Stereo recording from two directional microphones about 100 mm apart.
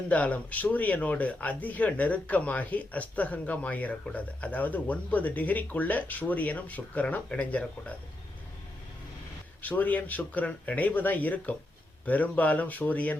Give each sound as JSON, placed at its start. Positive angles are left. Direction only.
{"t": 0.1, "sound": "speech", "side_deg": 15}
{"t": 9.6, "sound": "speech", "side_deg": 15}